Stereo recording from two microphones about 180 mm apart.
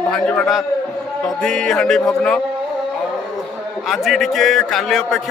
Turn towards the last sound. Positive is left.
turn(degrees=0)  # may be behind; listen again after turning